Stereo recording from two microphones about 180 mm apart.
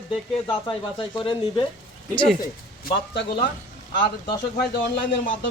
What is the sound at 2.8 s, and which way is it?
Speech, 65° left (ahead or behind).